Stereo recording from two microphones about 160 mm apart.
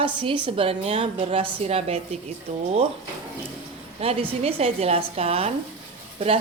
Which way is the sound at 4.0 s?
40° right (ahead or behind).